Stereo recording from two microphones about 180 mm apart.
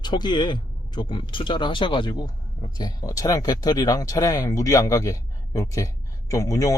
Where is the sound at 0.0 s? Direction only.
25° left (ahead or behind).